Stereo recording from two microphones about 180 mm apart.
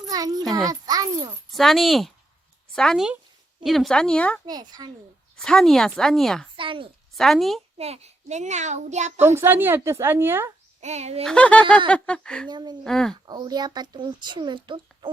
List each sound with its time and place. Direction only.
0.1 s a sound: 20° right (ahead or behind)
0.5 s a child's voice: 20° right (ahead or behind)
1.5 s speech: centre (ahead or behind)
4.4 s speech: 20° right (ahead or behind)
5.4 s speech: centre (ahead or behind)
6.6 s speech: 30° right (ahead or behind)
7.1 s speech: centre (ahead or behind)
7.8 s a child's voice: 35° right (ahead or behind)
9.2 s a woman's voice: 15° right (ahead or behind)
10.8 s a child's voice: 40° right (ahead or behind)
11.3 s speech: 5° left (ahead or behind)
12.5 s speech: 25° right (ahead or behind)
12.8 s speech: 5° left (ahead or behind)
13.2 s speech: 25° right (ahead or behind)